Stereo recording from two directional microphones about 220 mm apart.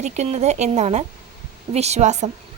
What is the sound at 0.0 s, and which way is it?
Speech, 30° right (ahead or behind).